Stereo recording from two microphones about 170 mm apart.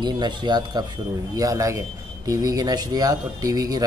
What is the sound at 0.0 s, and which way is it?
Speech, 25° right (ahead or behind).